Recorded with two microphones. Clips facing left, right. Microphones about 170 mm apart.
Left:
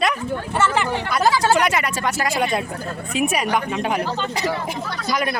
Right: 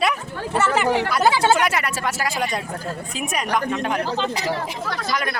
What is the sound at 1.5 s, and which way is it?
A woman's voice, centre (ahead or behind).